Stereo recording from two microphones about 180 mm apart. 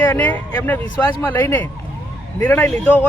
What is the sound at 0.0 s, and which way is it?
Speech, 10° left (ahead or behind).